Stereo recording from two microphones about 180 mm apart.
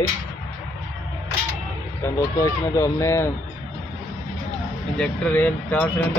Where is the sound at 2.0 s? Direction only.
15° left (ahead or behind).